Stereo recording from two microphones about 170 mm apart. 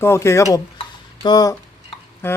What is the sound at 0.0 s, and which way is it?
A man's voice, 15° left (ahead or behind).